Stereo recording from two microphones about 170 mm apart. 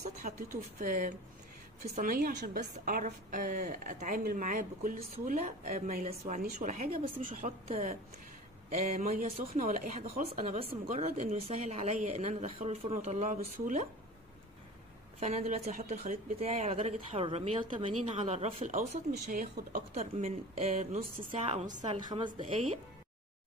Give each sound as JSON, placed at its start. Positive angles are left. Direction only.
{"t": 0.0, "sound": "a woman's voice", "side_deg": -50}
{"t": 4.9, "sound": "speech", "side_deg": -35}
{"t": 5.3, "sound": "a woman's voice", "side_deg": -50}
{"t": 6.0, "sound": "a woman's voice", "side_deg": -40}
{"t": 7.6, "sound": "speech", "side_deg": -35}
{"t": 8.7, "sound": "a woman's voice", "side_deg": -50}
{"t": 10.6, "sound": "speech", "side_deg": -40}
{"t": 15.1, "sound": "speech", "side_deg": -40}
{"t": 21.6, "sound": "speech", "side_deg": -30}